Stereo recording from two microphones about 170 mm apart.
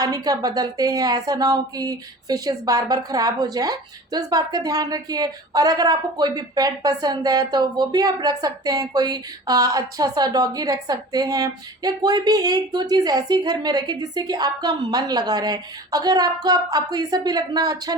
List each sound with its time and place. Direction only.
0.0 s speech: 20° right (ahead or behind)